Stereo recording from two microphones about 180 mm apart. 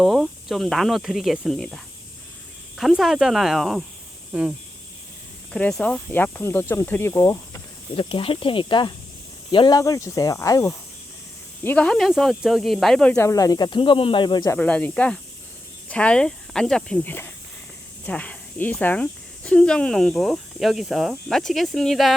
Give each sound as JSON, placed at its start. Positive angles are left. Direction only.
{"t": 0.0, "sound": "speech", "side_deg": 0}
{"t": 5.5, "sound": "speech", "side_deg": 5}
{"t": 8.1, "sound": "speech", "side_deg": 30}
{"t": 14.6, "sound": "speech", "side_deg": 5}